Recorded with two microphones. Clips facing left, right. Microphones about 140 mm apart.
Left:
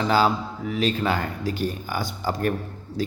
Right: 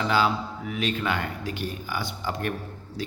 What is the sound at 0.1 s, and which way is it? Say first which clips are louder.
A man's voice: left 4 dB; 40° left (ahead or behind).